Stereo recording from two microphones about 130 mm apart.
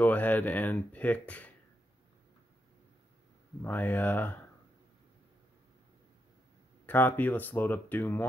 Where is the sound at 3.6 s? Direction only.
15° left (ahead or behind).